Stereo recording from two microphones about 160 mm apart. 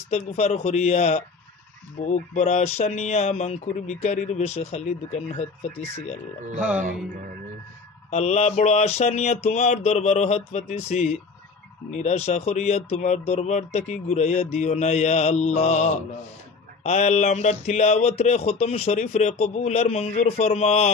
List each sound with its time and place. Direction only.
0.1 s speech: 45° left (ahead or behind)
8.1 s speech: 45° left (ahead or behind)